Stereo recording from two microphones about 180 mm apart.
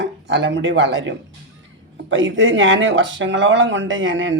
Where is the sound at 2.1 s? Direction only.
90° right.